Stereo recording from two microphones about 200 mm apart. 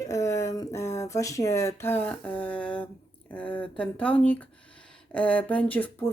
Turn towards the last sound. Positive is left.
turn(degrees=10)  # may be behind; listen again after turning